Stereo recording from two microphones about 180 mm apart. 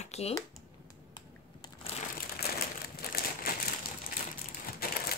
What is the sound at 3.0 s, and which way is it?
Crumpling, 55° left (ahead or behind).